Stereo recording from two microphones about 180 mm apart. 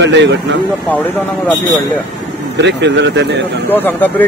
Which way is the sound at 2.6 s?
75° right (ahead or behind).